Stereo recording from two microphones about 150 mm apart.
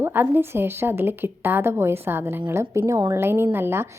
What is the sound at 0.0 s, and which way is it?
A woman's voice, 15° right (ahead or behind).